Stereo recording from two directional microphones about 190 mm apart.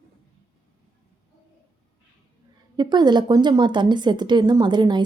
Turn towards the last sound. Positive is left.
turn(degrees=-25)  # may be behind; listen again after turning